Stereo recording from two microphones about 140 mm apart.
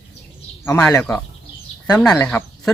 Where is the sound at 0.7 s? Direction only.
15° left (ahead or behind).